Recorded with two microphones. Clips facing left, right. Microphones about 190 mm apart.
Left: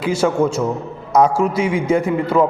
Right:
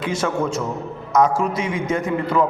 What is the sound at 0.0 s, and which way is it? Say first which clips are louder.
A man's voice: left 5 dB; 30° left (ahead or behind).